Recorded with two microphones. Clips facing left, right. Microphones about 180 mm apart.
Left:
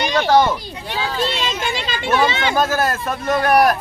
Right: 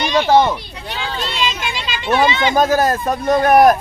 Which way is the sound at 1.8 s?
55° left (ahead or behind).